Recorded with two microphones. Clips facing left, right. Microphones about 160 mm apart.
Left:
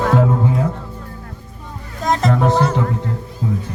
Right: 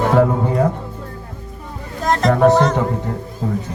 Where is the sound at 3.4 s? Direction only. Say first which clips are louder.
Even; 55° right (ahead or behind).